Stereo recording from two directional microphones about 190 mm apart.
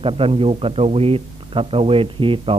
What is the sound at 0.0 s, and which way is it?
A man's voice, 30° right (ahead or behind).